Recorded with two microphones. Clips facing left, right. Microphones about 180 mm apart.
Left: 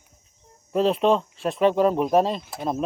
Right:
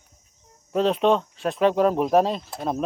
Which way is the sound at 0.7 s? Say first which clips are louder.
Even; centre (ahead or behind).